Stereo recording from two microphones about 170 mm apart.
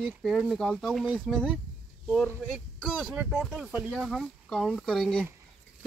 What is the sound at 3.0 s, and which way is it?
Speech, 10° right (ahead or behind).